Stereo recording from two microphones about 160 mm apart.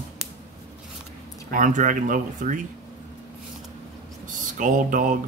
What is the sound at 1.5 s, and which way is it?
Speech, 55° right (ahead or behind).